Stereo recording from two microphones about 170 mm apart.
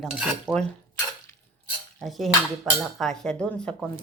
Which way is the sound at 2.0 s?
Centre (ahead or behind).